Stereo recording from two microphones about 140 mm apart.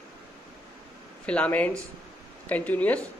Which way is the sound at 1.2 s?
10° left (ahead or behind).